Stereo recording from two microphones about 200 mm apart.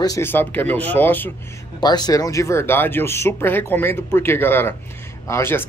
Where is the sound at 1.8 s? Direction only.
20° left (ahead or behind).